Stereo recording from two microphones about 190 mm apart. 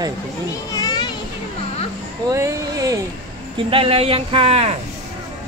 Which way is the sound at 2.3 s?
15° right (ahead or behind).